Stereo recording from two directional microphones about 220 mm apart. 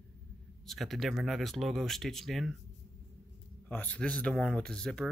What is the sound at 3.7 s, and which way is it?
Speech, 5° left (ahead or behind).